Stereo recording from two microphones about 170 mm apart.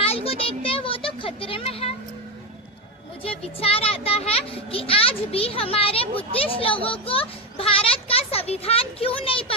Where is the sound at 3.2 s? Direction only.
35° left (ahead or behind).